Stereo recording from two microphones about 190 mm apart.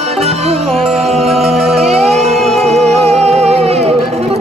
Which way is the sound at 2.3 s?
Centre (ahead or behind).